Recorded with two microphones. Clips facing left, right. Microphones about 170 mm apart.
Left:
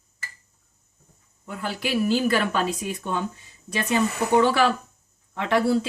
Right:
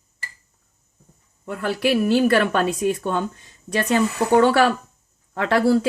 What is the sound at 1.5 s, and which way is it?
Speech, 60° right (ahead or behind).